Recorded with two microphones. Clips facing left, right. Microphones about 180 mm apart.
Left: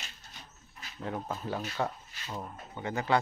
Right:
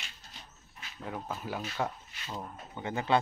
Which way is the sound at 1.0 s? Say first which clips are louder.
Left 2 dB; 5° right (ahead or behind).